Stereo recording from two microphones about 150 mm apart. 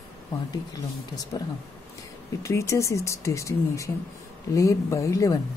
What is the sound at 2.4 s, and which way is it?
Speech, 20° left (ahead or behind).